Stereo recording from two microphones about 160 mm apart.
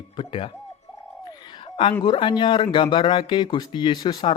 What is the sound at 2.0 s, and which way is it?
Speech, 30° left (ahead or behind).